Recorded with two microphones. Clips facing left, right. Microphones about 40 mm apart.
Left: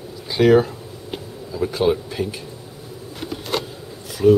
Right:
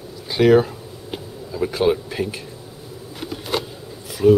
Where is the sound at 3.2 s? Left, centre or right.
Centre.